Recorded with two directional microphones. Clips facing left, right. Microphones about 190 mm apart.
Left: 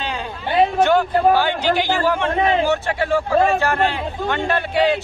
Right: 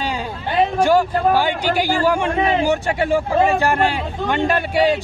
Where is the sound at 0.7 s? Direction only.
10° right (ahead or behind).